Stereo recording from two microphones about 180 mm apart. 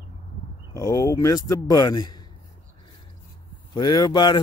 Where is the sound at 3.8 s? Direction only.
20° left (ahead or behind).